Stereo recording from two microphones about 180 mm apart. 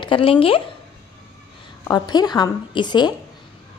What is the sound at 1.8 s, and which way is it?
A woman's voice, 20° left (ahead or behind).